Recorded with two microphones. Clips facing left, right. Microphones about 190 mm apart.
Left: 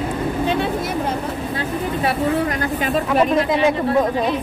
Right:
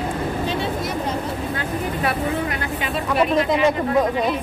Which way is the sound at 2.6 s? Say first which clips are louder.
Left 5 dB; 40° left (ahead or behind).